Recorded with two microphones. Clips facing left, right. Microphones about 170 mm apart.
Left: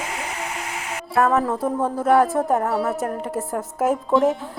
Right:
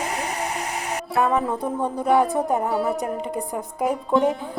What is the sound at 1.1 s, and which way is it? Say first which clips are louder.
Speech: left 3 dB; centre (ahead or behind).